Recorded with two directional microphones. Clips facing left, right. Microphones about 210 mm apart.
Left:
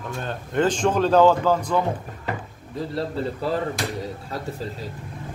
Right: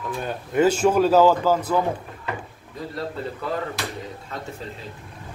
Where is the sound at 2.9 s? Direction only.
30° left (ahead or behind).